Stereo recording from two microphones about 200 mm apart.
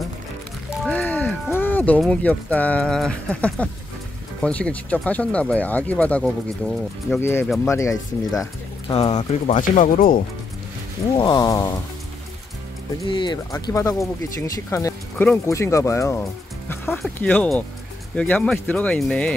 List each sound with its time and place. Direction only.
0.8 s speech: 5° left (ahead or behind)
7.2 s speech: 10° left (ahead or behind)
8.8 s speech: 30° left (ahead or behind); by 10.2 s 45° left (ahead or behind)
11.1 s a sound: 20° left (ahead or behind)
13.0 s speech: 25° left (ahead or behind); by 19.3 s 5° left (ahead or behind)